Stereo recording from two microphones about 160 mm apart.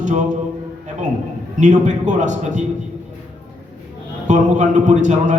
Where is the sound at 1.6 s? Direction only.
50° right (ahead or behind).